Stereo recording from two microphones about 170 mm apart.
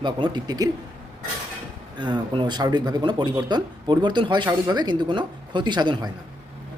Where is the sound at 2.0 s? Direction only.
25° right (ahead or behind).